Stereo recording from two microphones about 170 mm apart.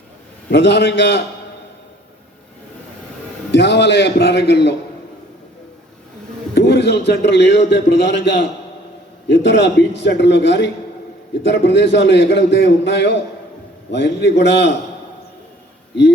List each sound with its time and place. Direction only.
0.5 s a man's voice: 90° left
3.5 s a man's voice: 90° left
6.5 s a man's voice: 80° left